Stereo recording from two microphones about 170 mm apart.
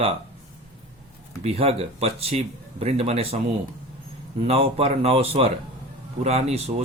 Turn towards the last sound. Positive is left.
turn(degrees=-40)  # may be behind; listen again after turning